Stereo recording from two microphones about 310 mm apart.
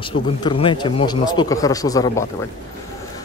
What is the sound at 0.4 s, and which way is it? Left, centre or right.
A man's voice, centre.